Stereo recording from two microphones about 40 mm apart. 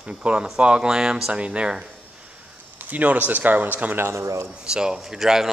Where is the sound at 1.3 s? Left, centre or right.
Right.